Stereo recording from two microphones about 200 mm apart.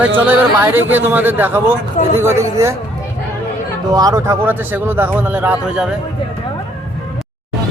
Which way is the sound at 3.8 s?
20° right (ahead or behind).